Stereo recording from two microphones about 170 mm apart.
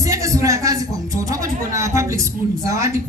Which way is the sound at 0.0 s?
20° right (ahead or behind).